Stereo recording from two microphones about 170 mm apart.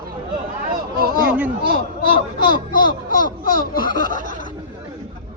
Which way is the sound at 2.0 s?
60° left (ahead or behind).